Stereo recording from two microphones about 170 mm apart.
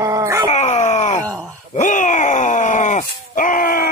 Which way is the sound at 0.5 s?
45° left (ahead or behind).